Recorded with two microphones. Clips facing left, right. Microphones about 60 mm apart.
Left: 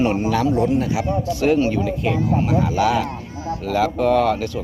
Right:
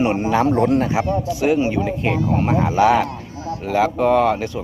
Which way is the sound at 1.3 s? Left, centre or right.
Centre.